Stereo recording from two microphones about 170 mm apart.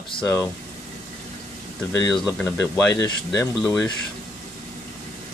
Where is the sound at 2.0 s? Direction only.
20° left (ahead or behind).